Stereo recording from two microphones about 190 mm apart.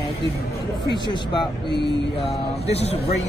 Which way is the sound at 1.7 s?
60° left (ahead or behind).